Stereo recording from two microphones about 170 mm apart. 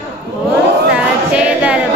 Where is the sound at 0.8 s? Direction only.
5° right (ahead or behind).